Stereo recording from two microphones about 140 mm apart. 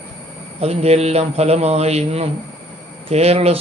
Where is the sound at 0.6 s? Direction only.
50° right (ahead or behind).